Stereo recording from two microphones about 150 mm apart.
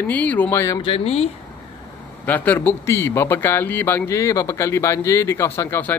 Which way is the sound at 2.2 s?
10° left (ahead or behind).